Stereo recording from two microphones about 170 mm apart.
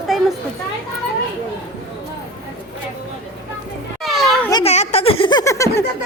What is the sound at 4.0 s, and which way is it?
Children playing, centre (ahead or behind).